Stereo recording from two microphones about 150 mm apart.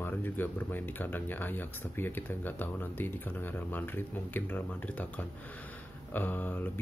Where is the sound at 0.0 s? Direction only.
10° left (ahead or behind).